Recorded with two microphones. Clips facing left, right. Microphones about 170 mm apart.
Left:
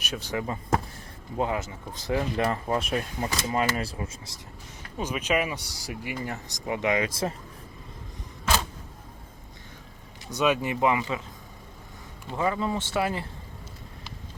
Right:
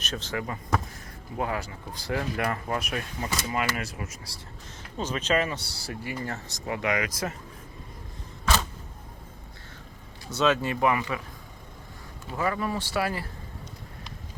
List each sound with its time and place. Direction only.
0.0 s speech: 10° left (ahead or behind); by 4.4 s 30° left (ahead or behind)
4.9 s speech: 10° left (ahead or behind); by 7.3 s 25° left (ahead or behind)
10.2 s speech: 15° left (ahead or behind)
12.4 s speech: 20° left (ahead or behind)